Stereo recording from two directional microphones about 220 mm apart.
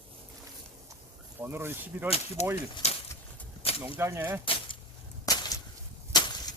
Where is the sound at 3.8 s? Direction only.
10° right (ahead or behind).